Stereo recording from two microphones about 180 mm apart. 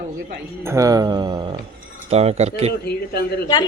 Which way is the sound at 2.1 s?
35° right (ahead or behind).